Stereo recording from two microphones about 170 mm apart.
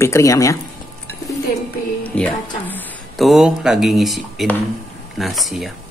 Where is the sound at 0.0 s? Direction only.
15° left (ahead or behind).